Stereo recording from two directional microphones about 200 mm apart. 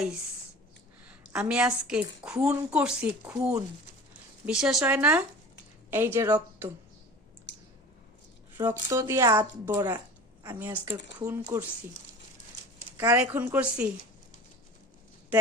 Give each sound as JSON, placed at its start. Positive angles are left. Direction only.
{"t": 1.3, "sound": "a woman's voice", "side_deg": -5}
{"t": 7.5, "sound": "clicking", "side_deg": 60}
{"t": 8.9, "sound": "speech", "side_deg": -15}
{"t": 13.0, "sound": "speech", "side_deg": -10}